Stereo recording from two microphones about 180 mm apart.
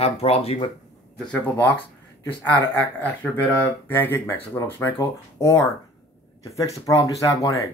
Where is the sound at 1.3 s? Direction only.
10° left (ahead or behind).